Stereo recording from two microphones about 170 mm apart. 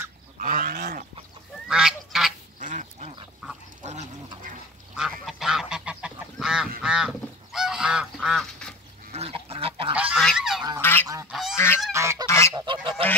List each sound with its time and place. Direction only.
0.4 s goat: 55° right (ahead or behind)
1.7 s goose: 5° right (ahead or behind)
2.6 s duck: 50° right (ahead or behind)
4.9 s goose: 5° right (ahead or behind)
9.1 s goose: 35° right (ahead or behind)
9.9 s goose: 5° right (ahead or behind)
10.8 s goose: 15° left (ahead or behind)
11.2 s goose: centre (ahead or behind)
11.5 s goose: 15° left (ahead or behind)
11.9 s goose: 15° right (ahead or behind)
12.3 s goose: 15° left (ahead or behind)
12.5 s goose: 25° right (ahead or behind)